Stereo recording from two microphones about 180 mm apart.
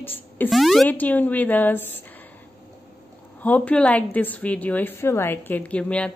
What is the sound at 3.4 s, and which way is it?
A woman's voice, 10° left (ahead or behind).